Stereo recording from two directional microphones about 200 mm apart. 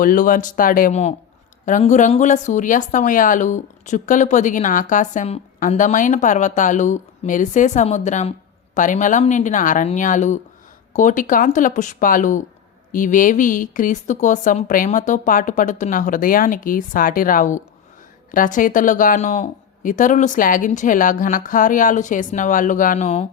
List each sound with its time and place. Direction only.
0.0 s a woman's voice: 45° left (ahead or behind)